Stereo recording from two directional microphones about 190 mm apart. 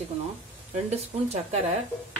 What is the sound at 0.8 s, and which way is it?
Speech, 35° right (ahead or behind).